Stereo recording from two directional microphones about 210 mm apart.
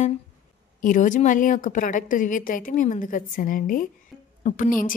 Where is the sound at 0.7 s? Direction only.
40° left (ahead or behind).